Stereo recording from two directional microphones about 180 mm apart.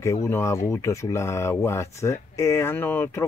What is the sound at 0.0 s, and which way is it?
Speech, 15° left (ahead or behind).